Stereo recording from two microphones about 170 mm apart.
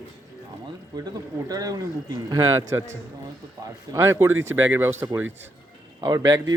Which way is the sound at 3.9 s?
15° right (ahead or behind).